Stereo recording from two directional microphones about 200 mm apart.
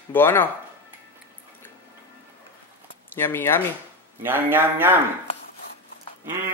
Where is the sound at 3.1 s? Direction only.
10° left (ahead or behind).